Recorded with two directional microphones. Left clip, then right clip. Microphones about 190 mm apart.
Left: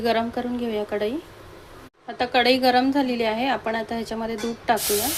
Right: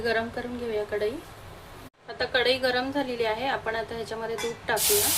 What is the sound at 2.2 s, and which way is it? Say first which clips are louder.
A woman's voice: left 5 dB; 40° left (ahead or behind).